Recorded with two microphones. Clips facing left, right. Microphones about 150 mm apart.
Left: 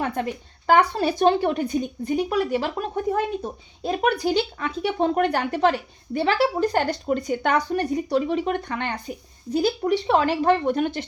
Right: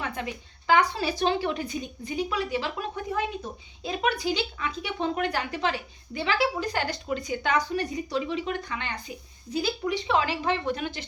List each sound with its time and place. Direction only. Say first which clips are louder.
0.0 s a woman's voice: left 7 dB; 50° left (ahead or behind)